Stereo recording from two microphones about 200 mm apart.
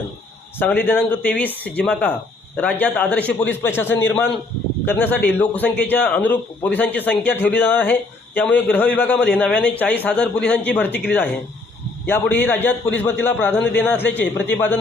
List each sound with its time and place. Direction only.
0.6 s a man's voice: 10° left (ahead or behind)
12.0 s a man's voice: 10° left (ahead or behind)